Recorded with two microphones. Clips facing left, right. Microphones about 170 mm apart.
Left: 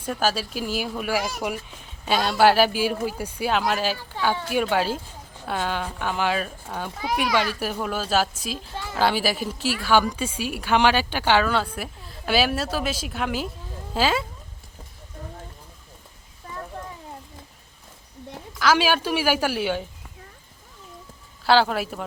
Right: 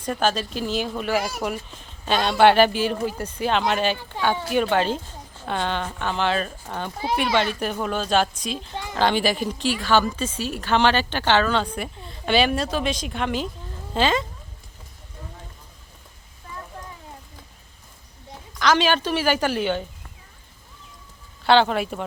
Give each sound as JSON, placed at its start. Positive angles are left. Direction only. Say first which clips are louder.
{"t": 0.0, "sound": "speech", "louder": "right 2 dB", "side_deg": 5}
{"t": 8.7, "sound": "speech", "louder": "right 1 dB", "side_deg": -15}
{"t": 9.0, "sound": "speech", "louder": "right 2 dB", "side_deg": 5}
{"t": 18.5, "sound": "speech", "louder": "right 1 dB", "side_deg": 5}
{"t": 21.4, "sound": "speech", "louder": "right 2 dB", "side_deg": 5}